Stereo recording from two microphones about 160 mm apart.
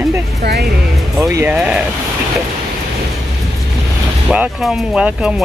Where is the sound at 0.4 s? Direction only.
85° right.